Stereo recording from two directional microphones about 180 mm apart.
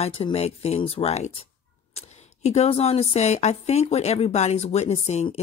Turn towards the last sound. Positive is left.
turn(degrees=40)  # may be behind; listen again after turning